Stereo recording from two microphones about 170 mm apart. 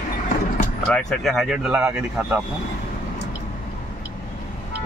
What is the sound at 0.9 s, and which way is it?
Speech, 5° left (ahead or behind).